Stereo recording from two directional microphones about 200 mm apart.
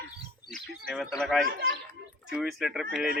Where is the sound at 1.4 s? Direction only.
55° right (ahead or behind).